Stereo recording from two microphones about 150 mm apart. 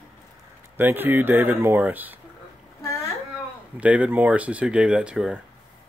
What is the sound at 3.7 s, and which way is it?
Speech, 10° right (ahead or behind).